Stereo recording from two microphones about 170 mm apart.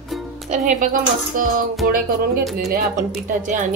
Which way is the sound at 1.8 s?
65° right (ahead or behind).